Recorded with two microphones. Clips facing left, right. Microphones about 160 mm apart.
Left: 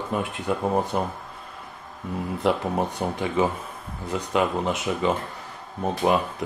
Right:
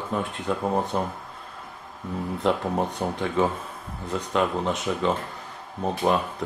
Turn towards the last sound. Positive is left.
turn(degrees=5)  # may be behind; listen again after turning